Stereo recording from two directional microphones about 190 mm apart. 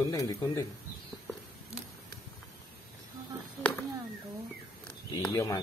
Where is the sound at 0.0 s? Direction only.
20° left (ahead or behind).